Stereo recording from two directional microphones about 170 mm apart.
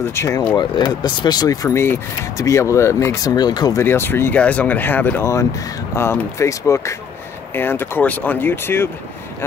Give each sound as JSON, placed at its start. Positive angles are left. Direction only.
{"t": 0.0, "sound": "speech", "side_deg": 15}